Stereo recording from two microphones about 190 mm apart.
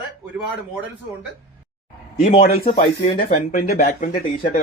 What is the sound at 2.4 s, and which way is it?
Speech, 45° left (ahead or behind).